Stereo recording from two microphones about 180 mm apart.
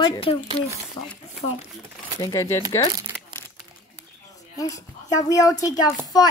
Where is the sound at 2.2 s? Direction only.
20° left (ahead or behind).